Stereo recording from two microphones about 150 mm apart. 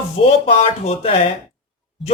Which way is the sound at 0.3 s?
45° left (ahead or behind).